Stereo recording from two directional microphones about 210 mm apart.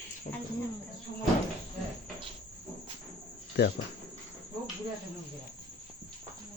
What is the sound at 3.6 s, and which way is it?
Speech, 50° left (ahead or behind).